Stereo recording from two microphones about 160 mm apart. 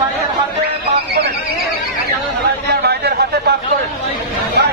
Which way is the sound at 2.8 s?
90° right.